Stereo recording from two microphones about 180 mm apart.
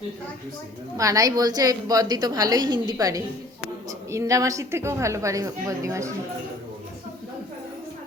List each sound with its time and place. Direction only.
0.9 s a woman's voice: 20° right (ahead or behind)